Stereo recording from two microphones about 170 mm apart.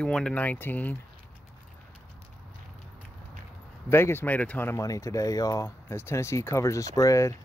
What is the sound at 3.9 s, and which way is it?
Speech, 15° left (ahead or behind).